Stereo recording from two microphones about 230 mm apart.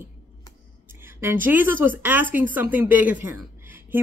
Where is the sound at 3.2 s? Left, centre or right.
Centre.